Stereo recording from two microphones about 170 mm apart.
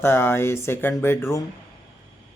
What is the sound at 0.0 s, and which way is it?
Speech, 15° left (ahead or behind).